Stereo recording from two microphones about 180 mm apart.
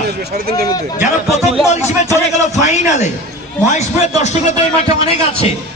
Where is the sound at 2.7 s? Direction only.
40° left (ahead or behind).